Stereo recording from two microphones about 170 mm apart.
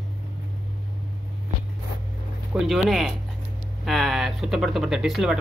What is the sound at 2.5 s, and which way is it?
Speech, centre (ahead or behind).